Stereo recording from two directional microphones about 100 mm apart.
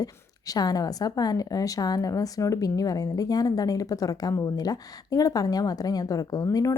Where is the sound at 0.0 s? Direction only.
40° left (ahead or behind).